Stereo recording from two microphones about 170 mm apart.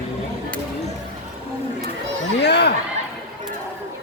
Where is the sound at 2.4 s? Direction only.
85° left.